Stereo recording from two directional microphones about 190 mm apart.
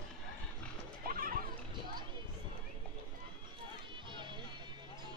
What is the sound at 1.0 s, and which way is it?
Children playing, 50° right (ahead or behind).